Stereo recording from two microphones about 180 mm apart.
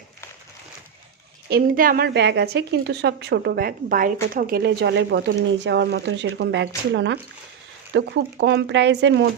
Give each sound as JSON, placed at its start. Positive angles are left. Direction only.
{"t": 1.5, "sound": "speech", "side_deg": -55}